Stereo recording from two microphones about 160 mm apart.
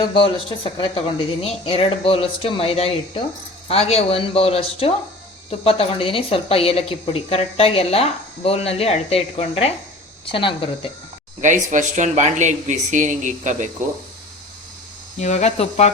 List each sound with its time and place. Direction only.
0.0 s a woman's voice: 35° left (ahead or behind)
11.3 s speech: 50° right (ahead or behind)
15.2 s speech: 45° left (ahead or behind)